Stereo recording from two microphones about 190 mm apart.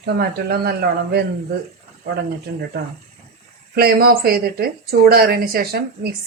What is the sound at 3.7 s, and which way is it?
Speech, 55° right (ahead or behind).